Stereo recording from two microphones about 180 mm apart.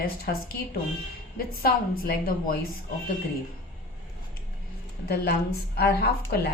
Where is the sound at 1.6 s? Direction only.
55° left (ahead or behind).